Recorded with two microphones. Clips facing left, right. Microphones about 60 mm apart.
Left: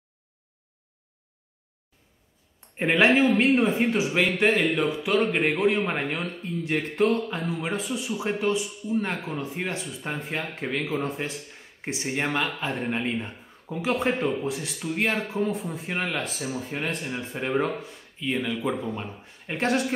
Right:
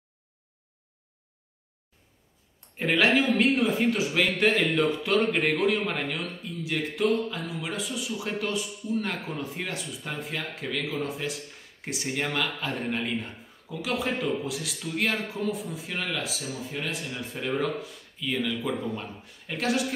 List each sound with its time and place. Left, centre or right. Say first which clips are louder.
2.8 s speech: left 3 dB; left
6.6 s speech: left 3 dB; left
7.2 s speech: left 4 dB; left
18.2 s speech: left 2 dB; centre